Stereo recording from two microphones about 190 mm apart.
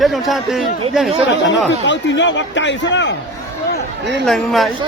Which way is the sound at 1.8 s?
75° left (ahead or behind).